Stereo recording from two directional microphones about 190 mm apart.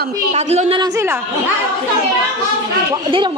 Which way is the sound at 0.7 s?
20° right (ahead or behind).